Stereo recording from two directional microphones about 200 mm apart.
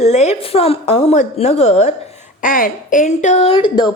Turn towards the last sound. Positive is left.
turn(degrees=25)  # may be behind; listen again after turning